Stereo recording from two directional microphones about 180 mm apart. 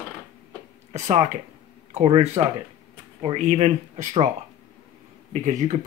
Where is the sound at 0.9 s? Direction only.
40° right (ahead or behind).